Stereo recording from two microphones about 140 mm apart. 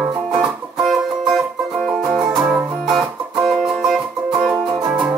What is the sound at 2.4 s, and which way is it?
Music, 10° right (ahead or behind).